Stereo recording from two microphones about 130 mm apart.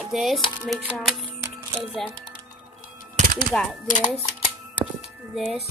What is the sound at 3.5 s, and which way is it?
Speech, 5° left (ahead or behind).